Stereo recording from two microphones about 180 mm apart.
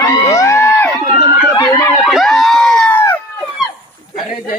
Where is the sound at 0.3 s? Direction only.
15° left (ahead or behind).